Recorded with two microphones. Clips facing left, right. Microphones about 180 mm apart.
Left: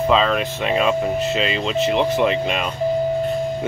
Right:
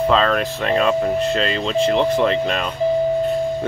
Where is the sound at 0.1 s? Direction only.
5° left (ahead or behind).